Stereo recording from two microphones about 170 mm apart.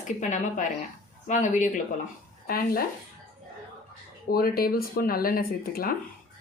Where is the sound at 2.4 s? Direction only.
60° left (ahead or behind).